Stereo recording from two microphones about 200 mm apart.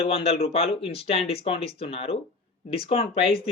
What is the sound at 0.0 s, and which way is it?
Speech, 30° left (ahead or behind).